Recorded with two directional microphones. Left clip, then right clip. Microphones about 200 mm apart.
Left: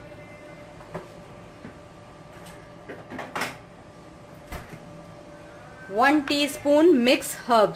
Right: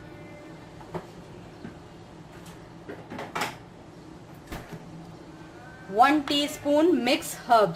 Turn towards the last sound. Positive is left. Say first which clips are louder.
# left 1 dB
turn(degrees=25)  # may be behind; listen again after turning